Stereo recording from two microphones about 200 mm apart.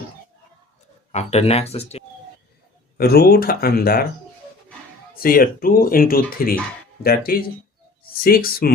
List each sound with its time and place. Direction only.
1.1 s speech: 30° left (ahead or behind)
3.0 s speech: 50° left (ahead or behind)
5.2 s speech: 45° left (ahead or behind)